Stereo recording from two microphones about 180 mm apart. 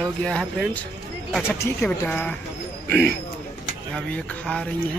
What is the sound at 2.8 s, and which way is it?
Speech, 60° right (ahead or behind).